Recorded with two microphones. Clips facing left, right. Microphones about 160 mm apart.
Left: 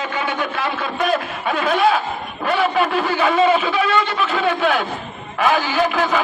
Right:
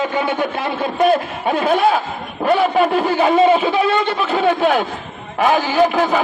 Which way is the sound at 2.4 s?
45° right (ahead or behind).